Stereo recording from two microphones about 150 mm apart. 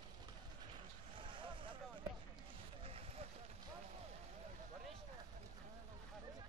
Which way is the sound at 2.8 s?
40° right (ahead or behind).